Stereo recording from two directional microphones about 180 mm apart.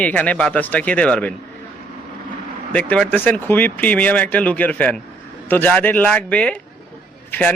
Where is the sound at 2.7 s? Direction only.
5° left (ahead or behind).